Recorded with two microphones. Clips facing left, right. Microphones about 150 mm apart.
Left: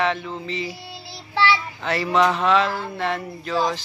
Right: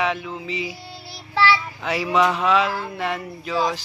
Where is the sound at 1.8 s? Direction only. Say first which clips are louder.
Left 2 dB; 5° right (ahead or behind).